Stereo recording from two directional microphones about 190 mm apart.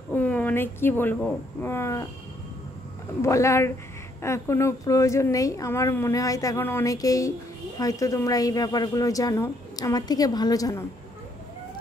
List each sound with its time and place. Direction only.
0.1 s speech: 10° left (ahead or behind)
3.2 s speech: 15° left (ahead or behind)